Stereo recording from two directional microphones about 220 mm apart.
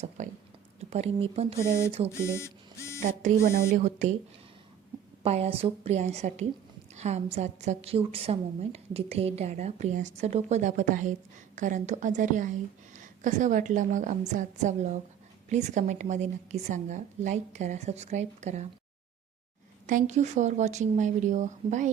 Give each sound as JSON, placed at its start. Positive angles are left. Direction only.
{"t": 0.2, "sound": "speech", "side_deg": -35}
{"t": 2.1, "sound": "a sound", "side_deg": 10}
{"t": 3.0, "sound": "a woman's voice", "side_deg": -35}
{"t": 5.2, "sound": "a woman's voice", "side_deg": -25}
{"t": 19.9, "sound": "a woman's voice", "side_deg": -35}